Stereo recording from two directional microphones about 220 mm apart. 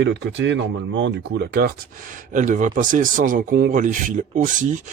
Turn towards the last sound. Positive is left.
turn(degrees=-35)  # may be behind; listen again after turning